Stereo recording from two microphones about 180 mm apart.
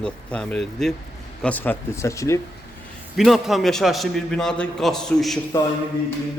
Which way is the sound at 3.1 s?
Centre (ahead or behind).